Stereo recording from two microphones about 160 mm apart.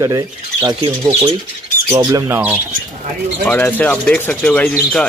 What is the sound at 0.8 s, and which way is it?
Speech, 40° right (ahead or behind).